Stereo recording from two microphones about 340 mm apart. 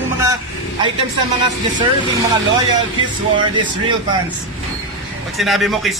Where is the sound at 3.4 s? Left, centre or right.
Centre.